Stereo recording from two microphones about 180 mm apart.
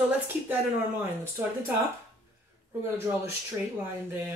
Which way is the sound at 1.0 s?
10° right (ahead or behind).